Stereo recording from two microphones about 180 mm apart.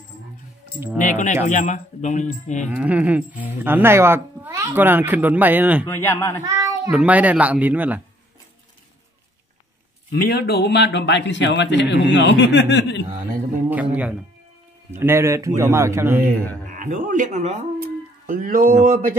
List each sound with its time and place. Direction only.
0.9 s speech: 45° left (ahead or behind)
2.7 s speech: 10° right (ahead or behind)
5.9 s a man's voice: 15° left (ahead or behind)
6.4 s child singing: 20° right (ahead or behind)
6.9 s speech: 5° right (ahead or behind)
10.2 s a man's voice: 60° left (ahead or behind)
13.7 s music: 10° right (ahead or behind)
14.9 s speech: 15° right (ahead or behind)
16.7 s speech: 45° right (ahead or behind)
17.7 s a sound: 50° right (ahead or behind)